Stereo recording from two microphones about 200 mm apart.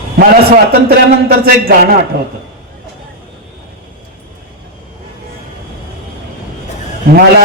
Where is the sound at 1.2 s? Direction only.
50° right (ahead or behind).